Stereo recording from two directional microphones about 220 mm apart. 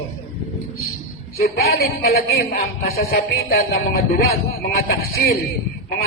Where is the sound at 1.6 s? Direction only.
45° left (ahead or behind).